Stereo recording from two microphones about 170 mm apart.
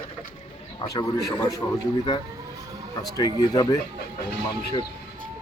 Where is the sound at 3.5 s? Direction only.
25° left (ahead or behind).